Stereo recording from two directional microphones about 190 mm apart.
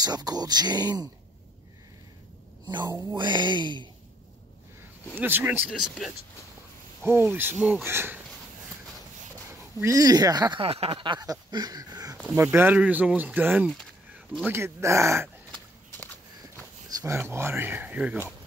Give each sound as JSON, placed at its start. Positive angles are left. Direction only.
{"t": 0.0, "sound": "speech", "side_deg": -20}
{"t": 2.6, "sound": "speech", "side_deg": -20}
{"t": 5.1, "sound": "speech", "side_deg": -10}
{"t": 5.7, "sound": "speech", "side_deg": 0}
{"t": 9.5, "sound": "speech", "side_deg": -15}
{"t": 12.2, "sound": "speech", "side_deg": -10}
{"t": 17.0, "sound": "speech", "side_deg": -15}